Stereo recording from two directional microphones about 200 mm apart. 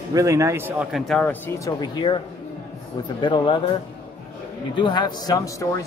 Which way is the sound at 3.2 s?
25° left (ahead or behind).